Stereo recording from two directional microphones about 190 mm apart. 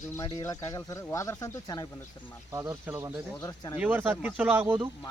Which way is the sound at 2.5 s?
15° right (ahead or behind).